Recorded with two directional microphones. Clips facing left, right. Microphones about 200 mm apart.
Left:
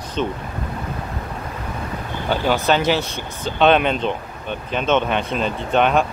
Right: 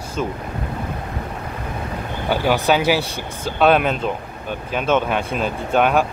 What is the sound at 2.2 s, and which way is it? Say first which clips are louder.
Speech: right 1 dB; 10° right (ahead or behind).